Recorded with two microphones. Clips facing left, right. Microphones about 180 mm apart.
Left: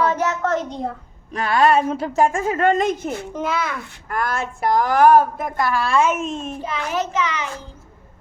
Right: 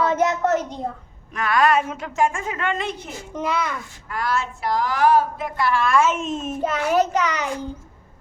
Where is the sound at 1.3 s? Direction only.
30° left (ahead or behind).